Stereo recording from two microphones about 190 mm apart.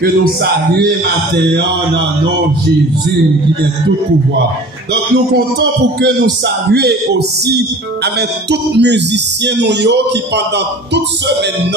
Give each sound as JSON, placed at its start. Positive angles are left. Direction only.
{"t": 0.0, "sound": "a man's voice", "side_deg": -55}
{"t": 5.1, "sound": "a man's voice", "side_deg": -60}